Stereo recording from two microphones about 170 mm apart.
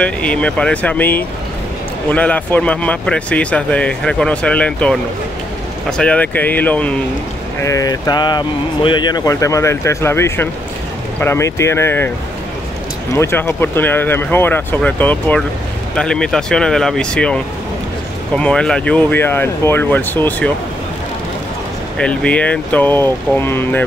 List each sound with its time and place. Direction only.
0.0 s speech: 5° left (ahead or behind)
7.6 s speech: 20° left (ahead or behind)
13.1 s speech: 15° left (ahead or behind)
21.9 s speech: 5° left (ahead or behind)